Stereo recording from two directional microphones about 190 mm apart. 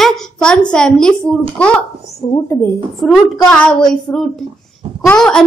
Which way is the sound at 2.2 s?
25° left (ahead or behind).